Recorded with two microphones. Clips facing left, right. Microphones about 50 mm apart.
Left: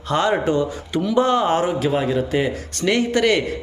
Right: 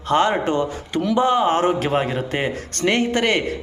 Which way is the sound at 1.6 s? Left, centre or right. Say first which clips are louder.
Right 1 dB; right.